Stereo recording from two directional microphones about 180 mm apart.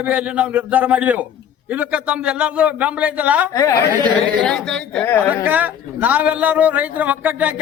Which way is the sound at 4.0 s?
5° left (ahead or behind).